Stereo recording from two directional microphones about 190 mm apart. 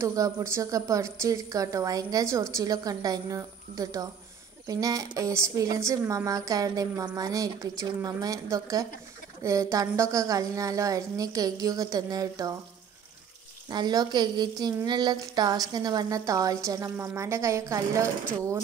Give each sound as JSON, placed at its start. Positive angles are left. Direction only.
{"t": 0.0, "sound": "a woman's voice", "side_deg": -15}
{"t": 13.7, "sound": "a woman's voice", "side_deg": -20}